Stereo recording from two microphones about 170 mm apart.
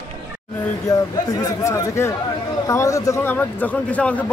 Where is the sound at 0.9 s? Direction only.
20° left (ahead or behind).